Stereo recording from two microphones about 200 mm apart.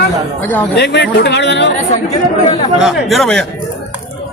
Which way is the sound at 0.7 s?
55° left (ahead or behind).